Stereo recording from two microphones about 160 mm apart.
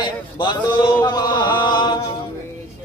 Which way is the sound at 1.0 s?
25° left (ahead or behind).